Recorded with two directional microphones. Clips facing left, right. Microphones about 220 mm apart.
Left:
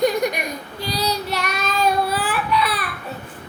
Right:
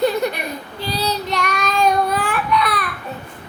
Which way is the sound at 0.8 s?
10° left (ahead or behind).